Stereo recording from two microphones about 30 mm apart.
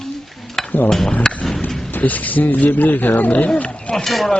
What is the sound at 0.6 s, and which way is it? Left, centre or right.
Dishes, centre.